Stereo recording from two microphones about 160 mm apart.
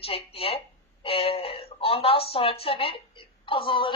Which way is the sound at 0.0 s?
35° left (ahead or behind).